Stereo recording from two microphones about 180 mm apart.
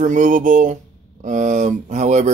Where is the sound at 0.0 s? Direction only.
45° right (ahead or behind).